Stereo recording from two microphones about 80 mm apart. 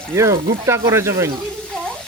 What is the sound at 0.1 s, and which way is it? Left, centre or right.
Speech, right.